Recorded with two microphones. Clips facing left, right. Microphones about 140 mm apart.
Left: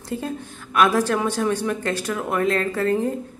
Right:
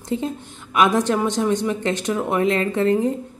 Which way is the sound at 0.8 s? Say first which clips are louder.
Right 1 dB; 15° right (ahead or behind).